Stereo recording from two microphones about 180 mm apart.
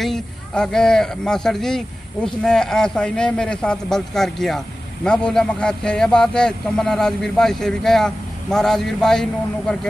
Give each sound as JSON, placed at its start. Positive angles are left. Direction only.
{"t": 0.0, "sound": "a man's voice", "side_deg": 0}